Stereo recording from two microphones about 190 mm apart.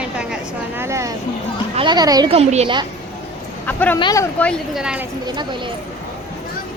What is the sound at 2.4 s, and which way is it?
Speech, 30° right (ahead or behind).